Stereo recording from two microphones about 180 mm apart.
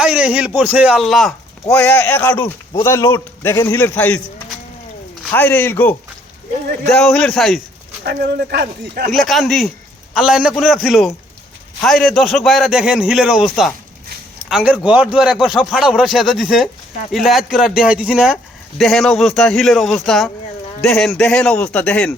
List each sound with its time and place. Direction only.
0.0 s a man's voice: 5° right (ahead or behind)
7.0 s a man's voice: 5° left (ahead or behind)
8.0 s speech: 60° right (ahead or behind)
9.1 s a man's voice: centre (ahead or behind)